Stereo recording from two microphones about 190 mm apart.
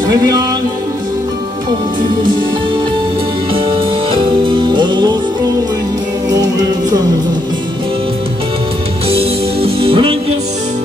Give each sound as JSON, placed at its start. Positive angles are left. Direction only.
{"t": 0.1, "sound": "music", "side_deg": -20}
{"t": 4.1, "sound": "music", "side_deg": -25}
{"t": 9.1, "sound": "music", "side_deg": -30}